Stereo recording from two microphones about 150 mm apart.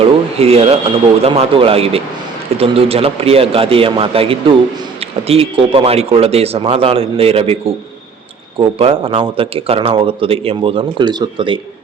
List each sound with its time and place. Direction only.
0.0 s speech: 40° right (ahead or behind)